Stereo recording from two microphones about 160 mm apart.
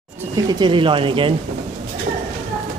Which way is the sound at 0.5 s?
30° right (ahead or behind).